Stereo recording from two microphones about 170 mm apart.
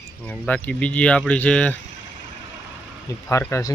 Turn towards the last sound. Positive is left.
turn(degrees=15)  # may be behind; listen again after turning